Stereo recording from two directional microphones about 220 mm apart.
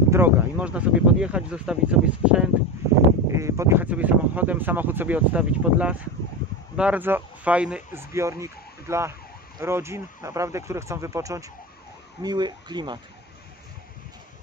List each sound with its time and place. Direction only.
0.1 s speech: 5° right (ahead or behind)